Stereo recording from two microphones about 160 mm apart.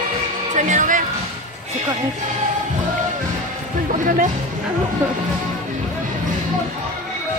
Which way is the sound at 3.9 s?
55° right (ahead or behind).